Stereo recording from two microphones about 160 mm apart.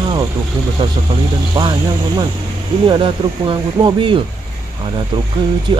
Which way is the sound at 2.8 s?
30° right (ahead or behind).